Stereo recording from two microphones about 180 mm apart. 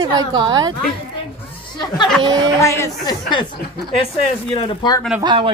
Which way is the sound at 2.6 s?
15° left (ahead or behind).